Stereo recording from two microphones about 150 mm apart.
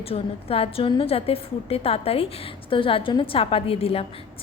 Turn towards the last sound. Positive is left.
turn(degrees=40)  # may be behind; listen again after turning